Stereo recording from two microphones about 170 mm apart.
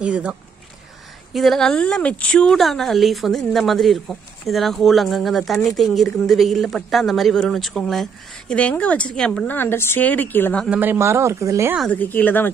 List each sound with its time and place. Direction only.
0.0 s speech: 5° right (ahead or behind); by 10.7 s 10° left (ahead or behind)
10.7 s a woman's voice: 10° right (ahead or behind)
11.8 s a woman's voice: 10° left (ahead or behind)